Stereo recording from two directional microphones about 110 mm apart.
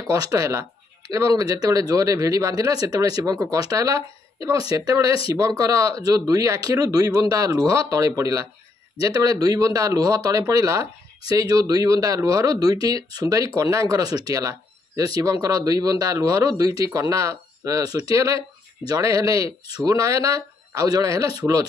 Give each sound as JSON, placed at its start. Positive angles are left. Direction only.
{"t": 0.0, "sound": "speech", "side_deg": -35}